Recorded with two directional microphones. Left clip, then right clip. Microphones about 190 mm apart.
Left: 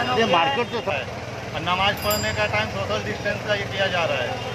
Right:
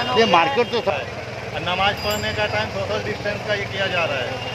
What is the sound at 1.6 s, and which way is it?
Speech, centre (ahead or behind).